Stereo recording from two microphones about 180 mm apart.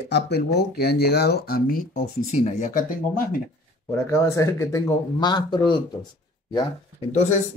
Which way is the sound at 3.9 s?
15° left (ahead or behind).